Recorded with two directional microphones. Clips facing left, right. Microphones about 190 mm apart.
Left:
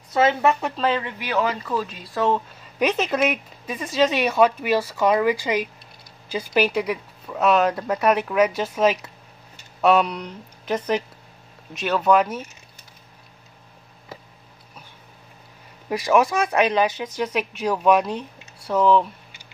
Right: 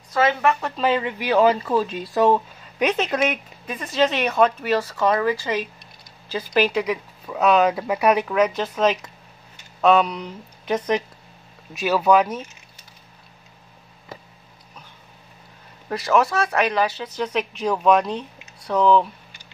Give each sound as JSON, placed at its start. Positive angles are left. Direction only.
{"t": 0.1, "sound": "speech", "side_deg": 20}
{"t": 0.7, "sound": "speech", "side_deg": -5}
{"t": 1.3, "sound": "speech", "side_deg": -30}
{"t": 2.8, "sound": "speech", "side_deg": 0}
{"t": 15.9, "sound": "speech", "side_deg": 15}